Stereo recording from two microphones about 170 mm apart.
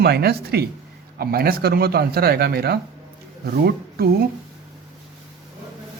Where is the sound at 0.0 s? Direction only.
70° right (ahead or behind).